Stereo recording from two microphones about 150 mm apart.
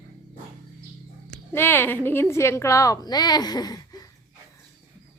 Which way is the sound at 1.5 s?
15° left (ahead or behind).